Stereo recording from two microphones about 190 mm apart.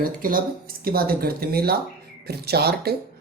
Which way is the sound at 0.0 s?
50° right (ahead or behind).